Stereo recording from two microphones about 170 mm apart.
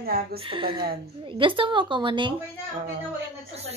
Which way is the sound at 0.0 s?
60° right (ahead or behind).